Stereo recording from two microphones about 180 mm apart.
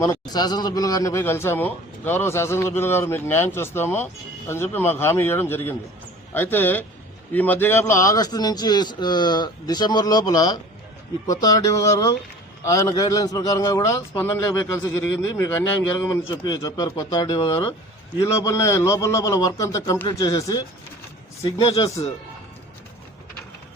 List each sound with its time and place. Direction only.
0.0 s a man's voice: 20° left (ahead or behind)